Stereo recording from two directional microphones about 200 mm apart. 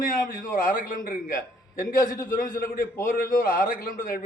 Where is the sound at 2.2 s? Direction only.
45° left (ahead or behind).